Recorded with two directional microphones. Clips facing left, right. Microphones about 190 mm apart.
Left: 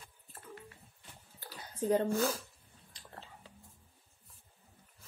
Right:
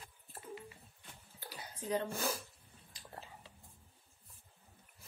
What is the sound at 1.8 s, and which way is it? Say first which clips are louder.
Speech: left 7 dB; 50° left (ahead or behind).